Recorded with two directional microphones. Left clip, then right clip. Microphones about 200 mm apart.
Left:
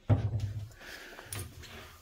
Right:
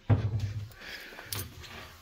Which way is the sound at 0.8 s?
30° left (ahead or behind).